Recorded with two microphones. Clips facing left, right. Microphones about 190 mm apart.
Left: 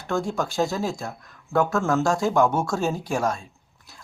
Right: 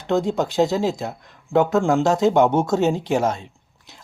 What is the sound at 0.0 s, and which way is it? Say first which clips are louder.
Speech: right 5 dB; 20° right (ahead or behind).